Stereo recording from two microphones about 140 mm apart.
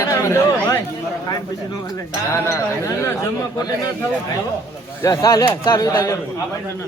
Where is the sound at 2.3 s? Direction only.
20° left (ahead or behind).